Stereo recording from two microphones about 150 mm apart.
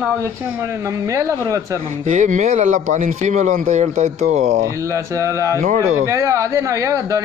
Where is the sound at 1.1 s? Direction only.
20° right (ahead or behind).